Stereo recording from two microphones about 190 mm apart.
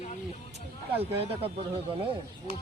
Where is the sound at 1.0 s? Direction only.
30° right (ahead or behind).